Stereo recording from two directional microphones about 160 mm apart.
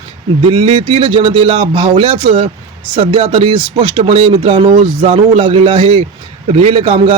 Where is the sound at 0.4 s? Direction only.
35° right (ahead or behind).